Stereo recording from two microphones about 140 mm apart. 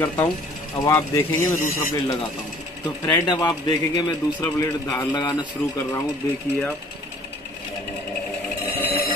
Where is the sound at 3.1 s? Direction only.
30° left (ahead or behind).